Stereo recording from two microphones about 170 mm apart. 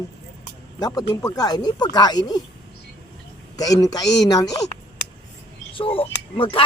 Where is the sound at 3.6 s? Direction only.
20° left (ahead or behind).